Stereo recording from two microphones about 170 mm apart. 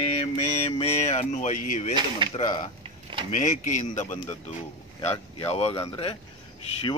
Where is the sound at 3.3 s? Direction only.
45° left (ahead or behind).